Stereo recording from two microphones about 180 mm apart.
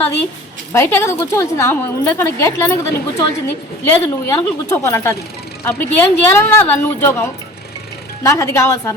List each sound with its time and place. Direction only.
0.7 s a woman's voice: 15° left (ahead or behind)